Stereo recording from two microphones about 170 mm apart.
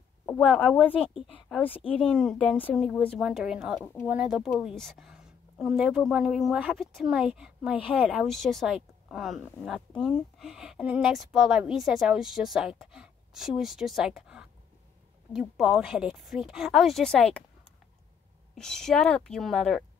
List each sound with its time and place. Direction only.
0.6 s a woman's voice: centre (ahead or behind)
1.7 s speech: 35° left (ahead or behind)
2.0 s a woman's voice: 5° left (ahead or behind)
18.5 s a woman's voice: 5° left (ahead or behind)